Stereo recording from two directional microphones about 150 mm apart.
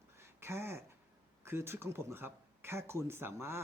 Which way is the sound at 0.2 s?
15° right (ahead or behind).